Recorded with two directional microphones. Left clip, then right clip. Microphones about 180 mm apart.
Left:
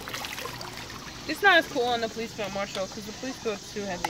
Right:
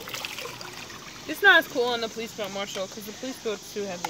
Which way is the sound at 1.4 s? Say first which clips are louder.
Right 2 dB; 45° right (ahead or behind).